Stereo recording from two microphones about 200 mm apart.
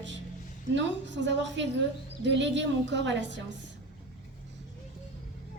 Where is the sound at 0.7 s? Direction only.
65° right (ahead or behind).